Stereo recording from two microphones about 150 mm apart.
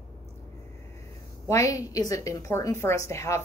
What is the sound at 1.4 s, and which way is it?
Speech, 20° left (ahead or behind).